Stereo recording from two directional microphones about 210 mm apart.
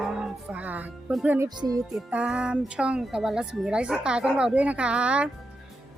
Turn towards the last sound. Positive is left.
turn(degrees=-5)  # may be behind; listen again after turning